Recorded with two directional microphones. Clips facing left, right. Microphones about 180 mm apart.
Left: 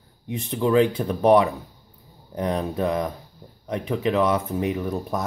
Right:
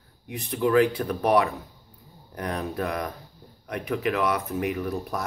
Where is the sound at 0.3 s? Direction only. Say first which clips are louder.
Left 2 dB; 25° left (ahead or behind).